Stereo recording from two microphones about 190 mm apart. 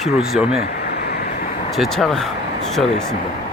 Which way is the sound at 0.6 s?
60° left (ahead or behind).